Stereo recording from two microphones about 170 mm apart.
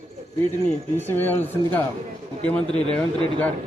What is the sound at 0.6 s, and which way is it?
Speech, 10° left (ahead or behind).